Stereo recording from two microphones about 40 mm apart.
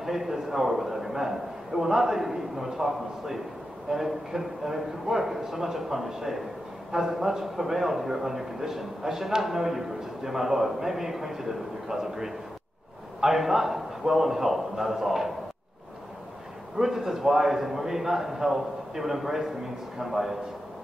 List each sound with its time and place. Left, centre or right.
0.0 s a man's voice: centre
16.7 s a man's voice: centre